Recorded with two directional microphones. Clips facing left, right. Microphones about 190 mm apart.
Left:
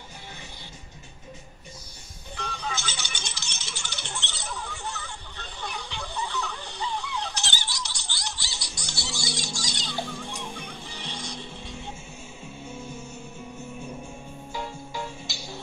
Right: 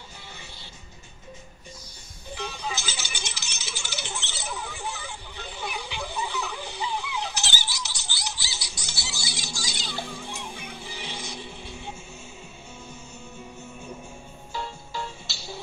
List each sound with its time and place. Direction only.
2.3 s rattle: 5° right (ahead or behind)
10.1 s music: 5° right (ahead or behind)
14.5 s music: 15° left (ahead or behind)